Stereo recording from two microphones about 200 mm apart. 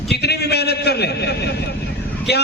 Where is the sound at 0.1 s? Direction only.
55° left (ahead or behind).